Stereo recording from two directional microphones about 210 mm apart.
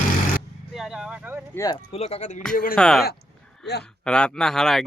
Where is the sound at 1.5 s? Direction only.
20° left (ahead or behind).